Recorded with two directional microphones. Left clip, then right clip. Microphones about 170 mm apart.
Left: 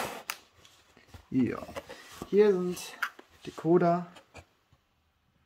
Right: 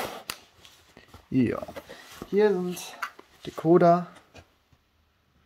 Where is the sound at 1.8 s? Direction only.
15° right (ahead or behind).